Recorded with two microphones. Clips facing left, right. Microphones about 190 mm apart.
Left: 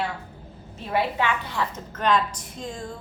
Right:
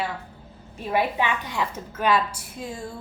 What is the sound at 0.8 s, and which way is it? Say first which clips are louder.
A woman's voice: right 1 dB; 15° right (ahead or behind).